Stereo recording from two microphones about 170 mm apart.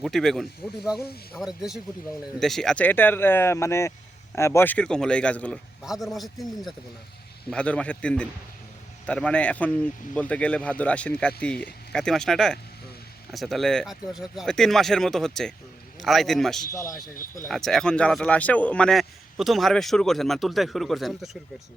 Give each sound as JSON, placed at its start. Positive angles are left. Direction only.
{"t": 0.0, "sound": "a man's voice", "side_deg": 0}
{"t": 16.7, "sound": "a man's voice", "side_deg": 20}
{"t": 17.5, "sound": "speech", "side_deg": 0}